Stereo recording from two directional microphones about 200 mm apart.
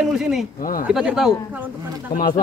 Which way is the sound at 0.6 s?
45° left (ahead or behind).